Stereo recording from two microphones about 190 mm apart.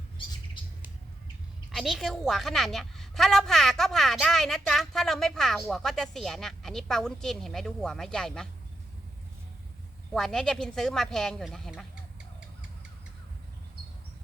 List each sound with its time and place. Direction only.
1.7 s a woman's voice: centre (ahead or behind)
10.1 s a woman's voice: centre (ahead or behind)